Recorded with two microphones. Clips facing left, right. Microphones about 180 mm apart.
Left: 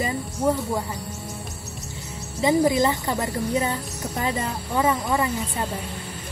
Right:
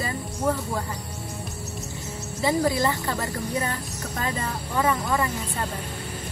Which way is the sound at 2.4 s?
20° left (ahead or behind).